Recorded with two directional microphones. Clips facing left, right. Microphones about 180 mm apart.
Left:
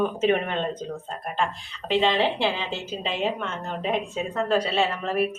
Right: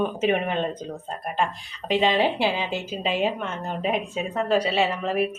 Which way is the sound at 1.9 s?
10° right (ahead or behind).